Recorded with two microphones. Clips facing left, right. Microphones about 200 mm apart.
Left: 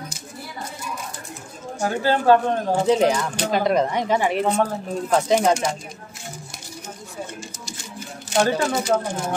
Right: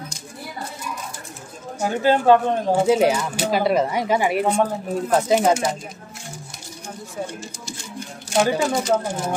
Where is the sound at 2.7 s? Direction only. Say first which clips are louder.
Right 1 dB; 5° right (ahead or behind).